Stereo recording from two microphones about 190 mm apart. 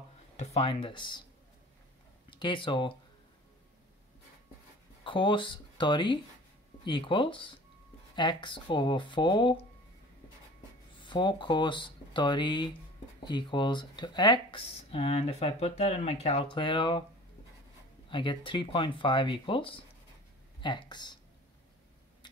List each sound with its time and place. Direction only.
0.4 s speech: 35° left (ahead or behind)
2.2 s speech: 25° left (ahead or behind)
5.0 s speech: 25° left (ahead or behind)
11.0 s speech: 25° left (ahead or behind)
18.1 s speech: 25° left (ahead or behind)